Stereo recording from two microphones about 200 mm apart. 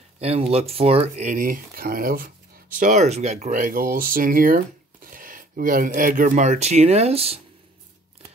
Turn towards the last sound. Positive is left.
turn(degrees=-30)  # may be behind; listen again after turning